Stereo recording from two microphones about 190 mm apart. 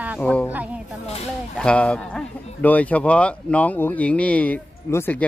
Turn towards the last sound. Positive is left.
turn(degrees=10)  # may be behind; listen again after turning